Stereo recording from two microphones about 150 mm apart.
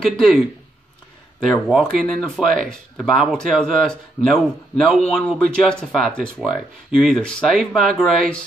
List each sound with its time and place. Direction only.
0.0 s speech: centre (ahead or behind)
1.4 s speech: centre (ahead or behind)